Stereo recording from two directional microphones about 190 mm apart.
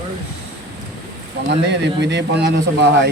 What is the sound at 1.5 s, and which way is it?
Speech, 65° right (ahead or behind).